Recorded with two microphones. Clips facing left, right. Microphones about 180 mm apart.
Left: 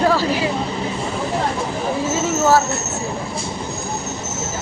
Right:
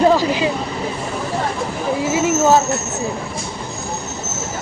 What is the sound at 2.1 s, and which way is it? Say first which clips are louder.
Vehicle: right 2 dB; 20° right (ahead or behind).